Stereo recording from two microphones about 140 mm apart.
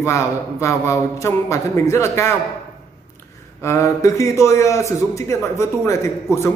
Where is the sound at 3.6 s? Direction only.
20° left (ahead or behind).